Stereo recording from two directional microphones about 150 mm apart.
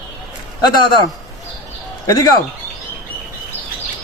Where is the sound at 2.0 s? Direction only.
25° left (ahead or behind).